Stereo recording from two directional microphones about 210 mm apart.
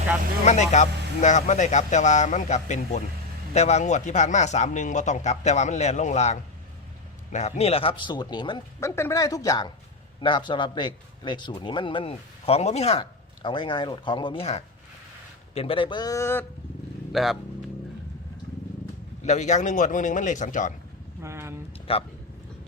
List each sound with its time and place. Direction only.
0.4 s a man's voice: 35° left (ahead or behind); by 16.5 s 10° left (ahead or behind)
17.1 s speech: centre (ahead or behind)
19.2 s speech: 35° left (ahead or behind)
21.2 s a sound: 10° right (ahead or behind)
21.9 s a man's voice: 25° left (ahead or behind)